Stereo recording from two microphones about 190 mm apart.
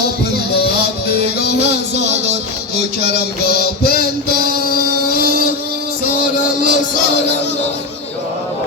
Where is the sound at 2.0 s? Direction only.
35° right (ahead or behind).